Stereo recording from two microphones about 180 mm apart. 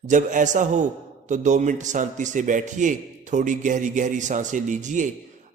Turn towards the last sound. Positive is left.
turn(degrees=-45)  # may be behind; listen again after turning